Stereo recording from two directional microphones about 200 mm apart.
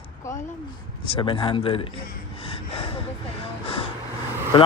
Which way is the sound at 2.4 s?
30° left (ahead or behind).